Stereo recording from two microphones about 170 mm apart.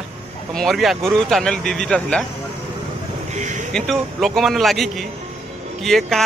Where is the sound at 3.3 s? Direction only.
45° right (ahead or behind).